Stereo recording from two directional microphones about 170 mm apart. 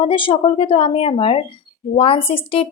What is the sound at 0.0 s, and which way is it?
Speech, 30° left (ahead or behind).